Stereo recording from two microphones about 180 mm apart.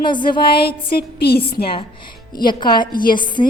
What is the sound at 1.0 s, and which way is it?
Speech, 60° left (ahead or behind).